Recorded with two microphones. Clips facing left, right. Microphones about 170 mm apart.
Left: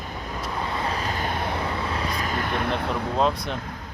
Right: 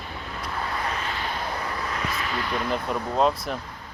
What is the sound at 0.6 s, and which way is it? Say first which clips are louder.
Vehicle: left 2 dB; 25° left (ahead or behind).